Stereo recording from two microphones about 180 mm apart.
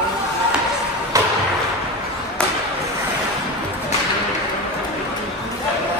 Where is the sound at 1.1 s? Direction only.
20° right (ahead or behind).